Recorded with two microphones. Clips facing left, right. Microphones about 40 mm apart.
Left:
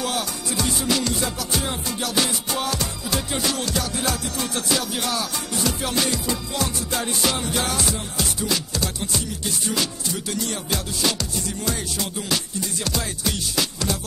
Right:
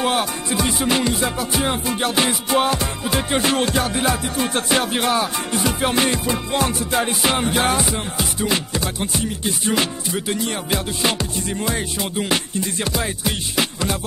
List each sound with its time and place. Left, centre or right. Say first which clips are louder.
0.0 s music: right 6 dB; right